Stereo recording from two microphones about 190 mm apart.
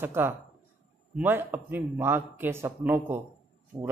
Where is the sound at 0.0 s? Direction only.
10° right (ahead or behind).